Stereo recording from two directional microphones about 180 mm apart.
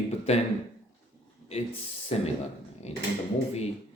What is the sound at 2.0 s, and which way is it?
Speech, 35° left (ahead or behind).